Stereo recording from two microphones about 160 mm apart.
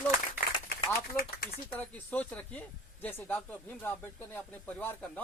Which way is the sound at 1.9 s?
10° left (ahead or behind).